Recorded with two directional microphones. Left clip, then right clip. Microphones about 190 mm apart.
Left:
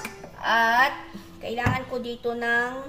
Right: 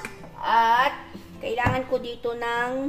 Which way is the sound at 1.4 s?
35° right (ahead or behind).